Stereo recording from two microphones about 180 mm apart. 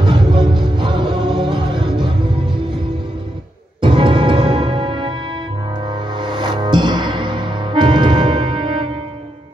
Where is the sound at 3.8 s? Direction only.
25° right (ahead or behind).